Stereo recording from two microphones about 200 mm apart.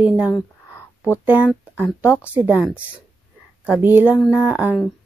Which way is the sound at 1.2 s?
10° right (ahead or behind).